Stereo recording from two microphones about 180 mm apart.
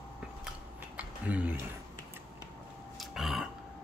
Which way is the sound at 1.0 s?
10° right (ahead or behind).